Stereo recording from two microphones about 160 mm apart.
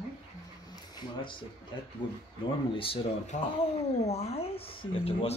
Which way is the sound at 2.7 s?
35° left (ahead or behind).